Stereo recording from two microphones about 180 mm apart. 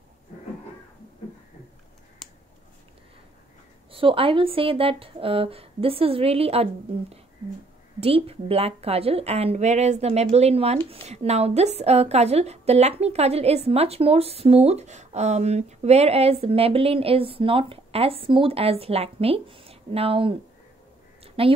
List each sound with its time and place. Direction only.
2.2 s a sound: centre (ahead or behind)
3.9 s a woman's voice: 30° right (ahead or behind)
21.2 s quack: 30° right (ahead or behind)